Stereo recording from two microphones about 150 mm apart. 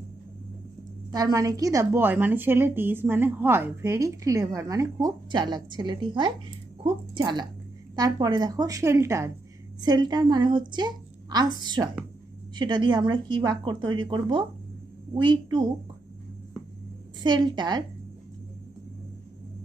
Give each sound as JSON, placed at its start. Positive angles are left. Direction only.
{"t": 1.1, "sound": "a woman's voice", "side_deg": -25}
{"t": 17.2, "sound": "a woman's voice", "side_deg": -30}